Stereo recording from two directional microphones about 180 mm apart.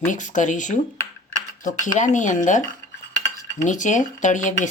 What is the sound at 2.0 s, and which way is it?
Speech, 40° left (ahead or behind).